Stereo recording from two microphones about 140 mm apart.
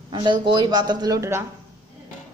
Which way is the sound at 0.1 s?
35° right (ahead or behind).